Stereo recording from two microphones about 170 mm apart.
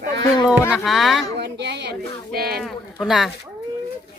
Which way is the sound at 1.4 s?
85° right.